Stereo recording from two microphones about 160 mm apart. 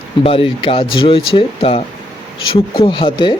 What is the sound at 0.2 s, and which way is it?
Speech, 35° left (ahead or behind).